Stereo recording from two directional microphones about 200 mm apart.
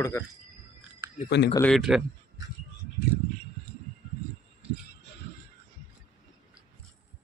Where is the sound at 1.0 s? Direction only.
15° right (ahead or behind).